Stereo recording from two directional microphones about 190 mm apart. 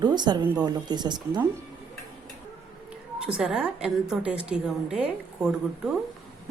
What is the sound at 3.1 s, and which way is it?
A woman's voice, 5° right (ahead or behind).